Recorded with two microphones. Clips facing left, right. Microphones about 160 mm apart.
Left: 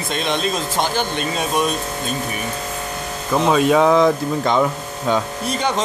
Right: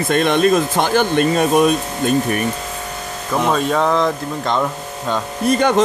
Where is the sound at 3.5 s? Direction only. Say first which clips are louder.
Left 4 dB; 5° left (ahead or behind).